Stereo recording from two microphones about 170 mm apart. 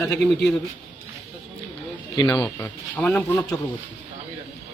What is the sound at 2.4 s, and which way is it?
Speech, 10° left (ahead or behind).